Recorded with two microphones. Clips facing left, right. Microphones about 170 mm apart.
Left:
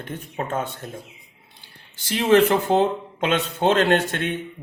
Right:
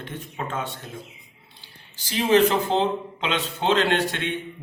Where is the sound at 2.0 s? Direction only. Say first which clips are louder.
Left 2 dB; 55° left (ahead or behind).